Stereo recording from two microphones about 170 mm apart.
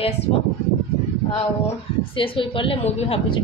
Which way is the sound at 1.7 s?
30° left (ahead or behind).